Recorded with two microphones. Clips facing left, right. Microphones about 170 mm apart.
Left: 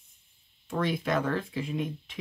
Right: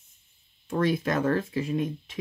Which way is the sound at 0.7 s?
45° right (ahead or behind).